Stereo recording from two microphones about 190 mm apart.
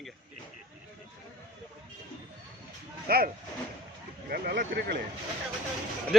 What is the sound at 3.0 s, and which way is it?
Speech, 50° right (ahead or behind).